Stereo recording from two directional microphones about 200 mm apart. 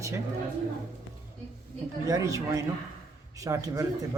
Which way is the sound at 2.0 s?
15° right (ahead or behind).